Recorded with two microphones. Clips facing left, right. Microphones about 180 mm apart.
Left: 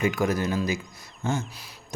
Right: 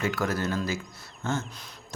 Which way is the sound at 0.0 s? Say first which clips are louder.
Left 4 dB; 15° left (ahead or behind).